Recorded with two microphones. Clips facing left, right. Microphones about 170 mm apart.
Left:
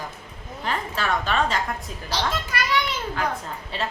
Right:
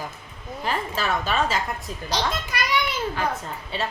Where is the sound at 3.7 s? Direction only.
Centre (ahead or behind).